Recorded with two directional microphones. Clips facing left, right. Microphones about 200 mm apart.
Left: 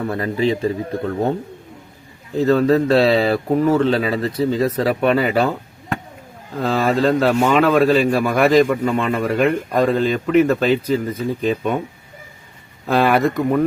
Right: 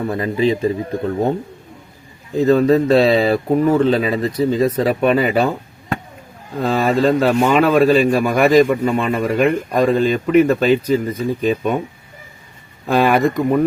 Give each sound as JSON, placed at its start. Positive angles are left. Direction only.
{"t": 0.0, "sound": "a man's voice", "side_deg": -15}
{"t": 2.3, "sound": "a man's voice", "side_deg": -15}
{"t": 6.6, "sound": "a man's voice", "side_deg": -15}
{"t": 12.9, "sound": "a man's voice", "side_deg": -15}